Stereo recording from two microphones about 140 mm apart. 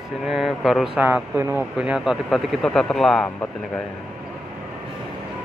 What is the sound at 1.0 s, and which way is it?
Speech, 15° right (ahead or behind).